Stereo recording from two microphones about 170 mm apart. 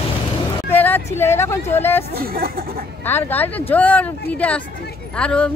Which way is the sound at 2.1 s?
60° right (ahead or behind).